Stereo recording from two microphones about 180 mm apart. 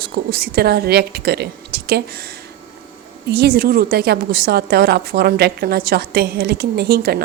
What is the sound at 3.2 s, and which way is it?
A woman's voice, 60° right (ahead or behind).